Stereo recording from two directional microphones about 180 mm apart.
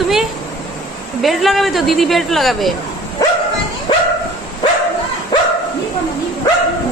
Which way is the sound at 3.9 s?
25° left (ahead or behind).